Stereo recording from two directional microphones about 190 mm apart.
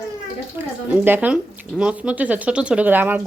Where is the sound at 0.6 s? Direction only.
10° right (ahead or behind).